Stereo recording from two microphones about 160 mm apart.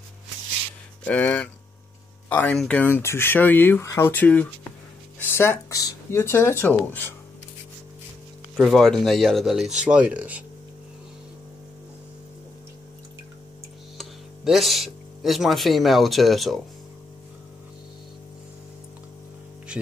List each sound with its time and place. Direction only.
1.0 s speech: 10° left (ahead or behind)
8.5 s speech: centre (ahead or behind)
13.9 s speech: centre (ahead or behind)